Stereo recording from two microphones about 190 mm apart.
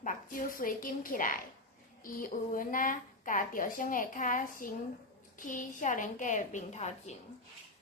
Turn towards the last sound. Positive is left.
turn(degrees=35)  # may be behind; listen again after turning